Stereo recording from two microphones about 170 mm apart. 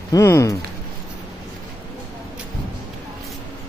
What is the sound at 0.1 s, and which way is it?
Speech, 15° left (ahead or behind).